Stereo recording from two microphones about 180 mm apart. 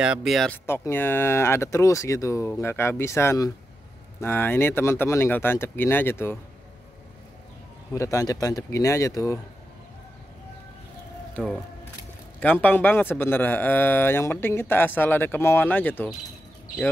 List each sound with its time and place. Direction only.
0.0 s speech: 5° right (ahead or behind)
0.7 s a man's voice: 15° left (ahead or behind)
7.9 s a man's voice: 15° left (ahead or behind)
11.3 s speech: centre (ahead or behind)
12.4 s a man's voice: 10° left (ahead or behind)